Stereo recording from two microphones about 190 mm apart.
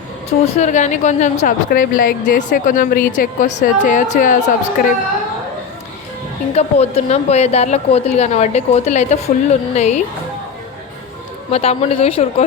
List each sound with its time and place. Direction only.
0.3 s a woman's voice: 35° left (ahead or behind)
6.6 s a woman's voice: 35° left (ahead or behind)
11.5 s a woman's voice: 30° left (ahead or behind)